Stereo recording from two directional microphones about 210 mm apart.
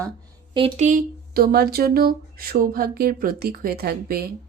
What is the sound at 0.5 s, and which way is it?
Speech, 25° right (ahead or behind).